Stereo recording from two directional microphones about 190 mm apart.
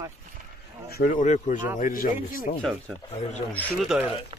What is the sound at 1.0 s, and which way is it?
Speech, 40° left (ahead or behind).